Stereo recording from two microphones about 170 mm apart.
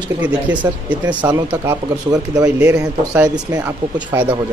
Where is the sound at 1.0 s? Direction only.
25° right (ahead or behind).